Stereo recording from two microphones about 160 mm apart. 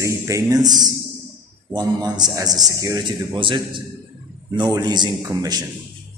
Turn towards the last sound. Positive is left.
turn(degrees=-25)  # may be behind; listen again after turning